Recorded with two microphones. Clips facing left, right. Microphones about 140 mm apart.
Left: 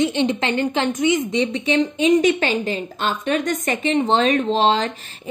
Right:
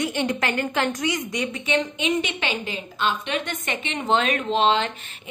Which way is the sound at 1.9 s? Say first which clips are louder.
Left 9 dB; 40° left (ahead or behind).